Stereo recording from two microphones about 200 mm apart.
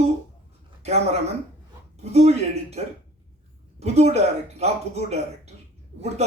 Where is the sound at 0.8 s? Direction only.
35° right (ahead or behind).